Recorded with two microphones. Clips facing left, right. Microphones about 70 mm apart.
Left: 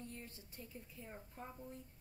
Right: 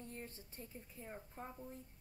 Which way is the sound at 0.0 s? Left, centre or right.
Right.